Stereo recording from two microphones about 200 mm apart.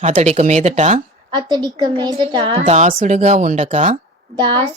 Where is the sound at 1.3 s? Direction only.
20° right (ahead or behind).